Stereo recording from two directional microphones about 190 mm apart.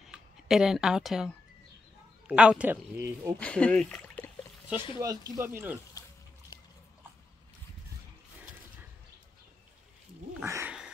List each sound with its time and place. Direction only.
0.0 s speech: centre (ahead or behind)
3.3 s speech: 5° left (ahead or behind)
4.9 s speech: 20° right (ahead or behind)
10.4 s a sound: 10° right (ahead or behind)